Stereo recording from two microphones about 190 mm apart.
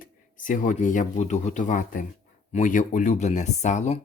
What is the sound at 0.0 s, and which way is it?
Speech, 45° left (ahead or behind).